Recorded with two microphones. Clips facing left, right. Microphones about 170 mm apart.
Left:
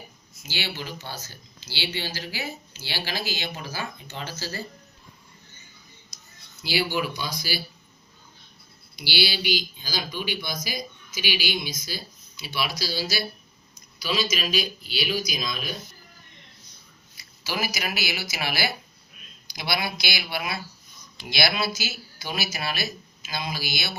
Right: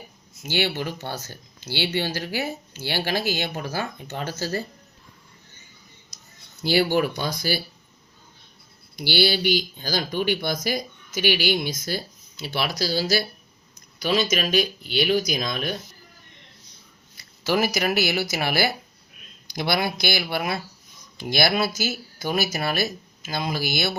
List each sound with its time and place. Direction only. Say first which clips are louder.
0.4 s speech: right 8 dB; 55° right (ahead or behind)
6.6 s speech: right 6 dB; 50° right (ahead or behind)
9.0 s speech: right 6 dB; 50° right (ahead or behind)
17.4 s speech: right 8 dB; 55° right (ahead or behind)